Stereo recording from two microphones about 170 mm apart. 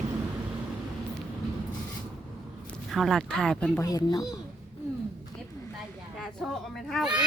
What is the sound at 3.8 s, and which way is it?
Speech, 20° left (ahead or behind).